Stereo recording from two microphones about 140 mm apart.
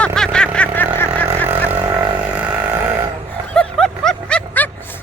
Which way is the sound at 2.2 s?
10° right (ahead or behind).